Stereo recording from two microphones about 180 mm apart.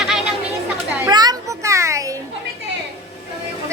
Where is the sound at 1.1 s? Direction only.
20° right (ahead or behind).